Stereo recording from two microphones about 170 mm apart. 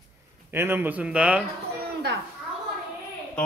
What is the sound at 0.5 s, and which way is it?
Speech, 15° right (ahead or behind).